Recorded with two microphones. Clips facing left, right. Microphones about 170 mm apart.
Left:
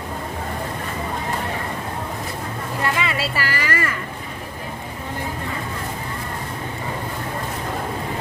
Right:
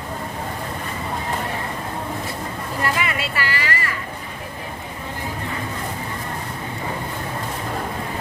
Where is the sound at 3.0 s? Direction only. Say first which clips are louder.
Left 1 dB; 35° left (ahead or behind).